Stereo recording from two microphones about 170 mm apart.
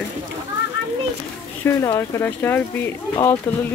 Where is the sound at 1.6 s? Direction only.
10° left (ahead or behind).